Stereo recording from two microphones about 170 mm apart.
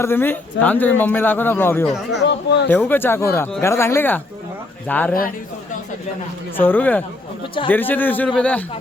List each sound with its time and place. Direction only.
0.0 s speech: 15° left (ahead or behind)
2.2 s speech: 90° left
2.6 s speech: 10° left (ahead or behind)
6.6 s speech: 10° left (ahead or behind)